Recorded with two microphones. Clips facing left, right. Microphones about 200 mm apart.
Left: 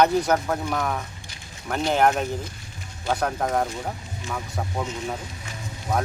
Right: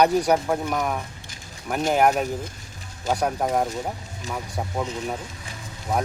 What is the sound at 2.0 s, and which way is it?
Speech, 10° right (ahead or behind).